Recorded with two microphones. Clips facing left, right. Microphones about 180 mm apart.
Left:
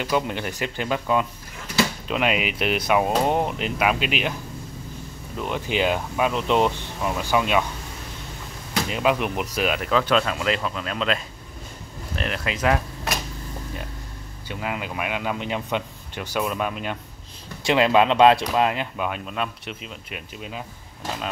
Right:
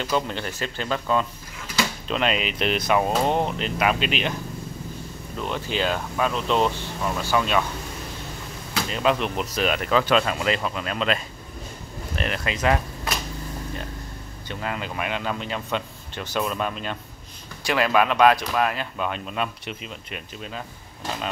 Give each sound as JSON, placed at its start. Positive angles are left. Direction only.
{"t": 0.0, "sound": "speech", "side_deg": 15}
{"t": 5.4, "sound": "speech", "side_deg": 15}
{"t": 8.8, "sound": "speech", "side_deg": 10}
{"t": 14.5, "sound": "speech", "side_deg": 10}
{"t": 17.6, "sound": "speech", "side_deg": 25}
{"t": 19.0, "sound": "speech", "side_deg": 5}